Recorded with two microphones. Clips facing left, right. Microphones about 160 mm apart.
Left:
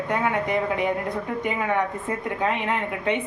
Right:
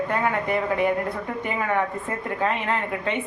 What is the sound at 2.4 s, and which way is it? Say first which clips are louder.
Speech: right 1 dB; 15° left (ahead or behind).